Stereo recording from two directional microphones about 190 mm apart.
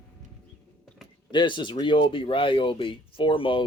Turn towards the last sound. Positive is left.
turn(degrees=25)  # may be behind; listen again after turning